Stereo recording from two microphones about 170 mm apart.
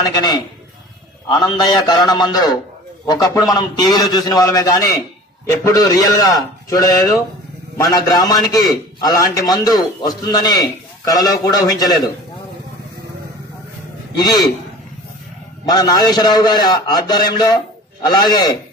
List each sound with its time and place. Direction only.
0.0 s a man's voice: 25° left (ahead or behind)
1.4 s a man's voice: 25° left (ahead or behind)
14.1 s a man's voice: 25° left (ahead or behind)
15.7 s a man's voice: 25° left (ahead or behind)